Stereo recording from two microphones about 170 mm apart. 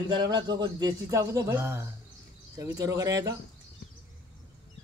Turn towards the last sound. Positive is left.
turn(degrees=-20)  # may be behind; listen again after turning